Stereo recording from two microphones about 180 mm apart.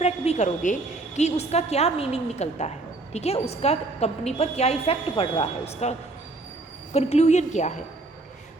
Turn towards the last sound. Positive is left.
turn(degrees=40)  # may be behind; listen again after turning